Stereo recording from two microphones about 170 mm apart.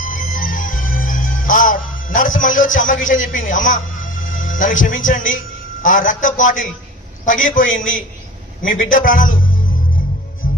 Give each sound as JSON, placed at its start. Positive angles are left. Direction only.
{"t": 0.0, "sound": "music", "side_deg": 55}
{"t": 4.2, "sound": "a man's voice", "side_deg": 50}